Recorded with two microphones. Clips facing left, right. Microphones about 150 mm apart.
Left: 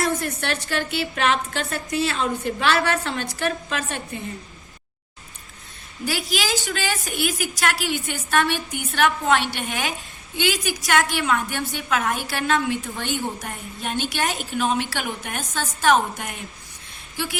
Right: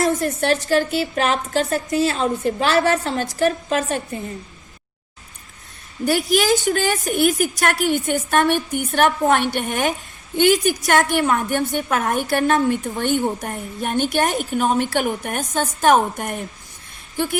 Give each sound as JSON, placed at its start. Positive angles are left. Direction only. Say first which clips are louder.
{"t": 0.0, "sound": "a woman's voice", "louder": "right 5 dB", "side_deg": -40}
{"t": 6.1, "sound": "a woman's voice", "louder": "right 8 dB", "side_deg": -50}